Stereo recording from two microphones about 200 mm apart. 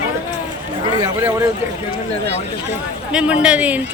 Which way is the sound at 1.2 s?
10° right (ahead or behind).